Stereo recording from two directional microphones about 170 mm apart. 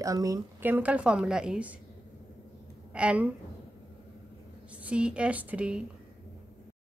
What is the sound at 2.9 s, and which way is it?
Speech, 5° right (ahead or behind).